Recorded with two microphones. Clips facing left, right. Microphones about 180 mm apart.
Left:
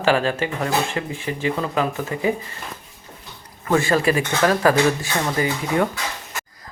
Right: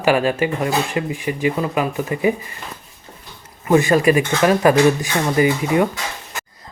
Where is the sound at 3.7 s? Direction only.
15° right (ahead or behind).